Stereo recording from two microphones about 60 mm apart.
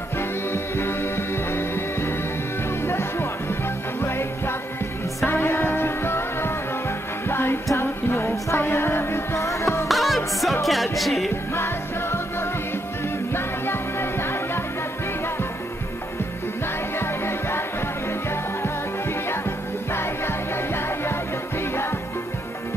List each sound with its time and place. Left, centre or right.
0.2 s music: left
9.8 s music: centre
11.5 s music: left
17.0 s music: left